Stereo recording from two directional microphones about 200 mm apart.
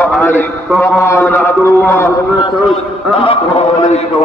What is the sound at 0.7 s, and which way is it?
A man's voice, 15° left (ahead or behind).